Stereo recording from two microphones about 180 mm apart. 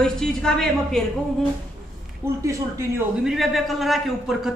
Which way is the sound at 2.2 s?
15° right (ahead or behind).